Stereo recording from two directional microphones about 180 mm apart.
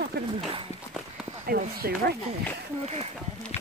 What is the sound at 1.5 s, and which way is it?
Speech, 60° right (ahead or behind).